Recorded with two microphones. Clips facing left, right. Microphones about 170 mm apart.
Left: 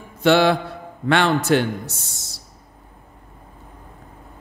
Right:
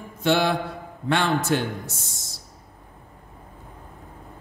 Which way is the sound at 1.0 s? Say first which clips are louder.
Left 4 dB; 80° left.